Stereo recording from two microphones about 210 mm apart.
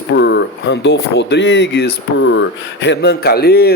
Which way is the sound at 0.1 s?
55° left (ahead or behind).